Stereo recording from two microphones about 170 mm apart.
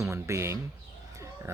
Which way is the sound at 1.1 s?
15° right (ahead or behind).